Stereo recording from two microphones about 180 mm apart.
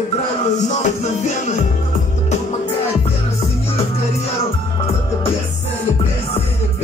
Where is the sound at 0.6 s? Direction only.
40° left (ahead or behind).